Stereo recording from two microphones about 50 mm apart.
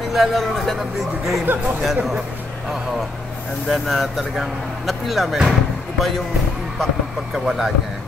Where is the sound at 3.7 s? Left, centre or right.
Centre.